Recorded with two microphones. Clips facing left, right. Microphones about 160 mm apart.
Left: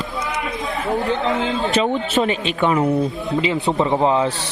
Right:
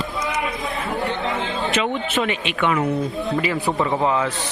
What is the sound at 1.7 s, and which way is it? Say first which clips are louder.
Speech: left 2 dB; 35° left (ahead or behind).